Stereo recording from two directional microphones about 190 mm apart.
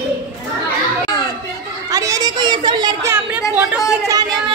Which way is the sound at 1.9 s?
20° right (ahead or behind).